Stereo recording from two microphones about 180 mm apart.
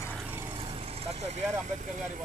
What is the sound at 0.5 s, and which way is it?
Vehicle, 30° right (ahead or behind).